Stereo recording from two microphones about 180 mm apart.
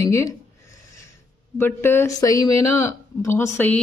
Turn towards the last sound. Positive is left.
turn(degrees=15)  # may be behind; listen again after turning